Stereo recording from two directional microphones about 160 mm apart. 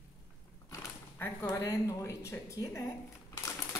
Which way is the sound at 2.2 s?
20° left (ahead or behind).